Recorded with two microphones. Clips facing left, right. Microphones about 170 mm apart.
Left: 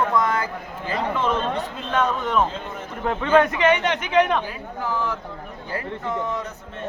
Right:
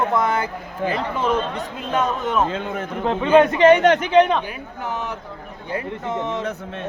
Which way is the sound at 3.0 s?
20° right (ahead or behind).